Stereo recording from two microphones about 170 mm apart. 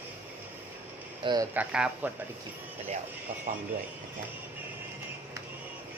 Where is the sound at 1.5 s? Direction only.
5° right (ahead or behind).